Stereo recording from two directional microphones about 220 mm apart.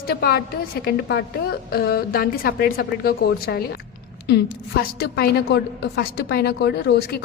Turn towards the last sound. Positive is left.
turn(degrees=45)  # may be behind; listen again after turning